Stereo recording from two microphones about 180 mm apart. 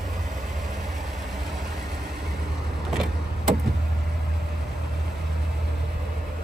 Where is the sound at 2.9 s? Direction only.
Centre (ahead or behind).